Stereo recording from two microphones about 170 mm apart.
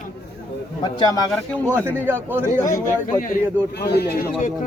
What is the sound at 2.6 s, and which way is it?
Speech, 20° left (ahead or behind).